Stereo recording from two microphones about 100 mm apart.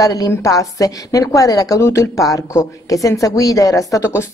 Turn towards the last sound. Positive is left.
turn(degrees=30)  # may be behind; listen again after turning